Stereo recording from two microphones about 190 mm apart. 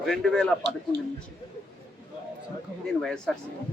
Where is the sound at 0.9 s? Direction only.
60° right (ahead or behind).